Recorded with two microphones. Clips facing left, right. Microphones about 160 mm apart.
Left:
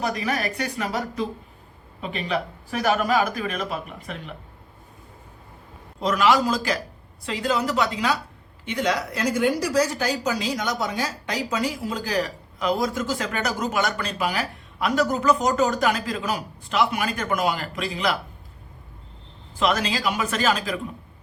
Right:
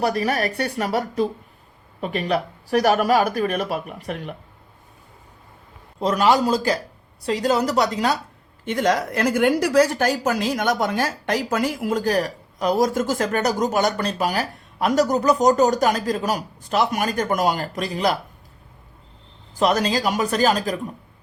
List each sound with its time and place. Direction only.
0.1 s speech: 40° right (ahead or behind)
0.8 s speech: 55° right (ahead or behind)
2.8 s a woman's voice: 45° right (ahead or behind)
6.0 s a woman's voice: 30° right (ahead or behind)
19.5 s speech: 40° right (ahead or behind)